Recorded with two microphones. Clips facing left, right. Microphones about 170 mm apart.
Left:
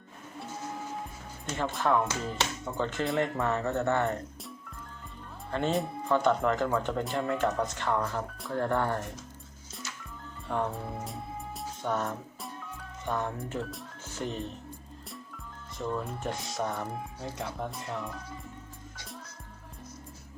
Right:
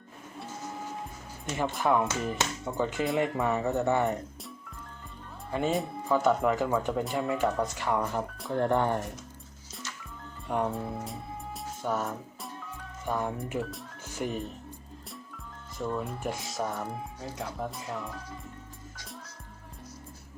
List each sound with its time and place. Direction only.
1.5 s speech: 15° right (ahead or behind)
5.5 s speech: 10° right (ahead or behind)
10.5 s speech: centre (ahead or behind)
11.8 s music: 5° right (ahead or behind)
13.1 s speech: 5° right (ahead or behind)
15.8 s speech: centre (ahead or behind)